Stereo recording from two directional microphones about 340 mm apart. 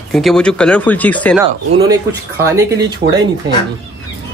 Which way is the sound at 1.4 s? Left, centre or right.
Centre.